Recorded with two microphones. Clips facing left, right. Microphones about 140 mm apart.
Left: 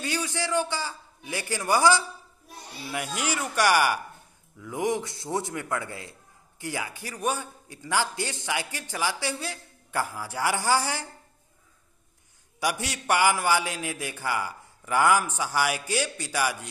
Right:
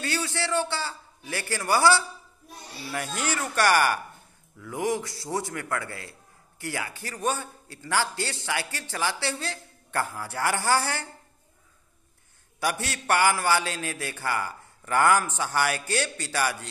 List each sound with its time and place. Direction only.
0.0 s a man's voice: 15° left (ahead or behind)
12.5 s a man's voice: 15° left (ahead or behind)